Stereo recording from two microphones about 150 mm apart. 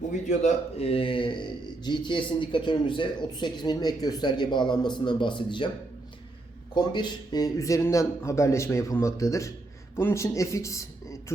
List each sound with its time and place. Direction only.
0.3 s speech: 45° left (ahead or behind)
6.7 s speech: 30° left (ahead or behind)